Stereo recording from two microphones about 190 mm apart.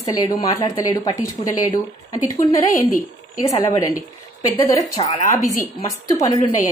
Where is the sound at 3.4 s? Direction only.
20° left (ahead or behind).